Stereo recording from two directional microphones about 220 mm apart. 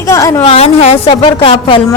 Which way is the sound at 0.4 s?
30° left (ahead or behind).